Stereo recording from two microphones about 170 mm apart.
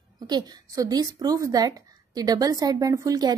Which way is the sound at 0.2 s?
25° right (ahead or behind).